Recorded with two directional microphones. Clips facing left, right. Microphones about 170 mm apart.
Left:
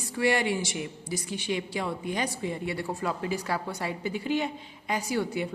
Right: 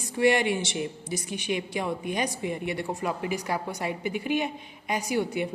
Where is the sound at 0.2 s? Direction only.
20° right (ahead or behind).